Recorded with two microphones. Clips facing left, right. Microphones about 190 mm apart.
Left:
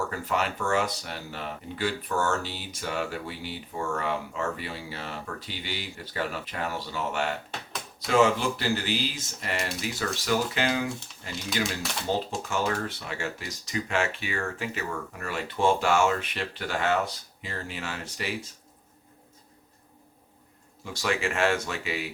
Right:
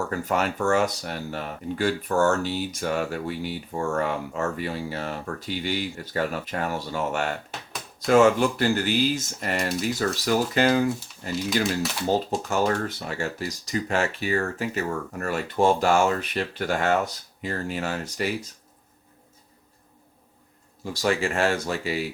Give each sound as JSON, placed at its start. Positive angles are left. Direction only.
{"t": 0.1, "sound": "speech", "side_deg": -45}
{"t": 11.4, "sound": "speech", "side_deg": 0}
{"t": 12.3, "sound": "speech", "side_deg": -45}
{"t": 20.8, "sound": "speech", "side_deg": -35}